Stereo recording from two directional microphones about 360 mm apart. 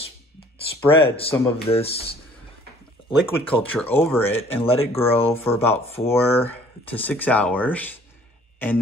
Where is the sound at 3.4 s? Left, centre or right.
Centre.